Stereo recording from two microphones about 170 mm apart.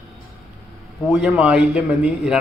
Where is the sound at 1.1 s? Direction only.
5° right (ahead or behind).